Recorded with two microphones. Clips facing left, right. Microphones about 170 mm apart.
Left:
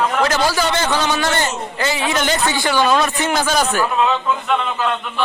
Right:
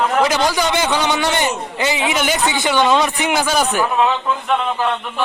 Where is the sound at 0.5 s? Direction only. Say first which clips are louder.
Right 1 dB; 15° right (ahead or behind).